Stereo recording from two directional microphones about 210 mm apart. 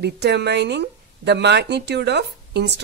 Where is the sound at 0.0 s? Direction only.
55° right (ahead or behind).